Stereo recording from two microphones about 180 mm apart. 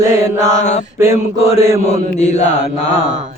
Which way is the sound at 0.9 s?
15° right (ahead or behind).